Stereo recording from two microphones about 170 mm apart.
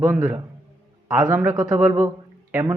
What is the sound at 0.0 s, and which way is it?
A man's voice, 15° right (ahead or behind).